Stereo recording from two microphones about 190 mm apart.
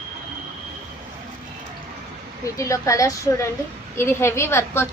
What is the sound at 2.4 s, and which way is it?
A woman's voice, 15° left (ahead or behind).